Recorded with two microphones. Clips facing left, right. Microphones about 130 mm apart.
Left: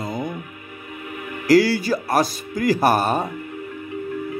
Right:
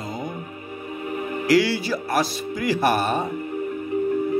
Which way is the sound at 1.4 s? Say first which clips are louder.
Left 4 dB; 40° left (ahead or behind).